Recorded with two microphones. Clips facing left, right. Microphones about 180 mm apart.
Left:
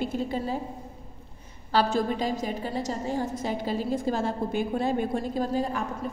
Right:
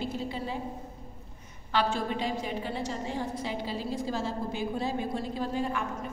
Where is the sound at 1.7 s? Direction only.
40° left (ahead or behind).